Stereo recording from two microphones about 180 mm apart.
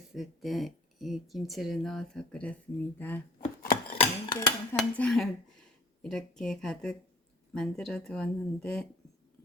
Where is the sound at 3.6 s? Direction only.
50° left (ahead or behind).